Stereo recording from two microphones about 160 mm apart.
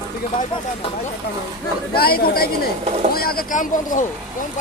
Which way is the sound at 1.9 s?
70° left (ahead or behind).